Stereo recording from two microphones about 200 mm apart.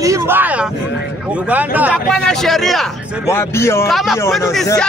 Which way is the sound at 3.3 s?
15° left (ahead or behind).